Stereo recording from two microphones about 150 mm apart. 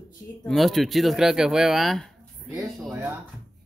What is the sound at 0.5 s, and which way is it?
A woman's voice, centre (ahead or behind).